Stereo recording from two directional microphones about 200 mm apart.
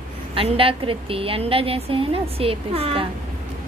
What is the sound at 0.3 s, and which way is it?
A woman's voice, 25° right (ahead or behind).